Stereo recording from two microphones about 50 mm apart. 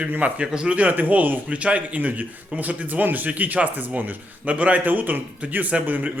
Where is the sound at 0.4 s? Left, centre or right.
Centre.